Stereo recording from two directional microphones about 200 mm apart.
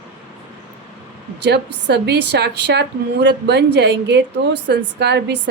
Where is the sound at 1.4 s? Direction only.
55° right (ahead or behind).